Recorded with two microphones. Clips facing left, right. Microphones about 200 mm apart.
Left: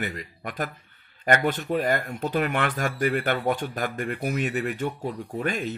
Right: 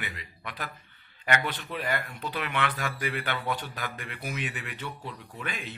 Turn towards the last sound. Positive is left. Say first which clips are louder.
# left 10 dB
turn(degrees=45)  # may be behind; listen again after turning